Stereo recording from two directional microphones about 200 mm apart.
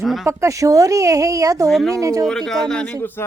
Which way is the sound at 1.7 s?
Centre (ahead or behind).